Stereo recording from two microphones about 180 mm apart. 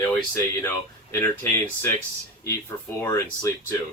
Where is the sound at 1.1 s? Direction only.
10° left (ahead or behind).